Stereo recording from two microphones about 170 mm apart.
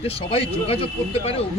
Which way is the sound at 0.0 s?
35° left (ahead or behind).